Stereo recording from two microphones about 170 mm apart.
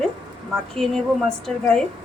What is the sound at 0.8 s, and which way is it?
A woman's voice, 5° left (ahead or behind).